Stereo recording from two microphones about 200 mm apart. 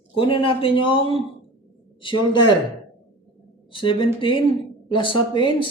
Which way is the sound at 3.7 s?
25° left (ahead or behind).